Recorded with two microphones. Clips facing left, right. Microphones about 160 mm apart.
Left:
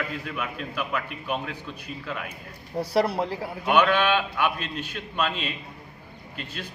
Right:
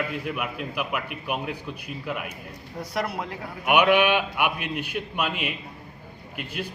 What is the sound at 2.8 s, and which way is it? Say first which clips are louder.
Speech: left 6 dB; 30° left (ahead or behind).